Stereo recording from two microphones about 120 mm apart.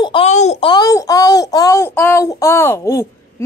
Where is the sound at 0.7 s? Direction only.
30° left (ahead or behind).